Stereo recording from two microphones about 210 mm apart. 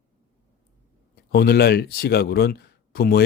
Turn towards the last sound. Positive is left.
turn(degrees=45)  # may be behind; listen again after turning